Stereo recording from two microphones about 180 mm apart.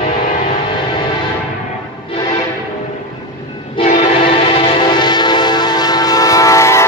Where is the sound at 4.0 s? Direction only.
30° left (ahead or behind); by 6.8 s 15° left (ahead or behind).